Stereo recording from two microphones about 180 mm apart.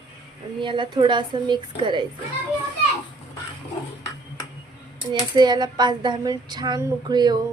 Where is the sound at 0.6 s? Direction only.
25° right (ahead or behind).